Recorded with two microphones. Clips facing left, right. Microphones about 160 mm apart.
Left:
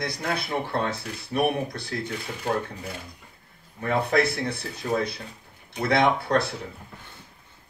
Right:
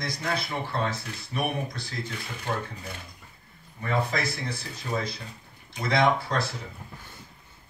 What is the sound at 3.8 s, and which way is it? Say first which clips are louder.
Speech: left 5 dB; 60° left (ahead or behind).